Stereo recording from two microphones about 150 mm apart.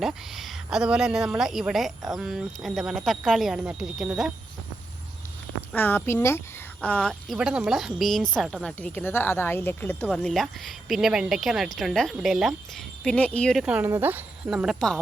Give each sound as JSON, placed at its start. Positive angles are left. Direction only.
{"t": 0.0, "sound": "speech", "side_deg": 0}
{"t": 5.7, "sound": "a woman's voice", "side_deg": 15}
{"t": 13.7, "sound": "speech", "side_deg": -15}